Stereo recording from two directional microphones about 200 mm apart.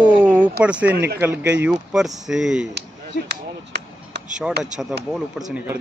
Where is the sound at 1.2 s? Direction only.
10° right (ahead or behind).